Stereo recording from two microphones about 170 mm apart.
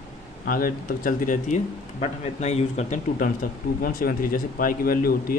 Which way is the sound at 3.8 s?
60° left (ahead or behind).